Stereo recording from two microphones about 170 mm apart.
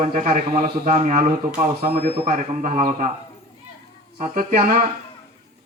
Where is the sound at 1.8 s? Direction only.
60° right (ahead or behind).